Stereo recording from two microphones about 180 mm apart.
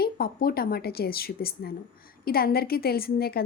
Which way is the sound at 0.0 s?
55° left (ahead or behind).